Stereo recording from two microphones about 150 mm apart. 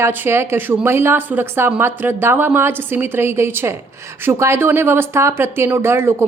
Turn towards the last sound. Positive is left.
turn(degrees=-15)  # may be behind; listen again after turning